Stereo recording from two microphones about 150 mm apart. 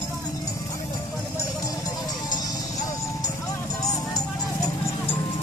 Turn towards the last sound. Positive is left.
turn(degrees=25)  # may be behind; listen again after turning